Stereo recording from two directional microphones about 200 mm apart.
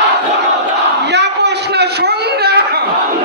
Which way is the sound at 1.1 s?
55° right (ahead or behind).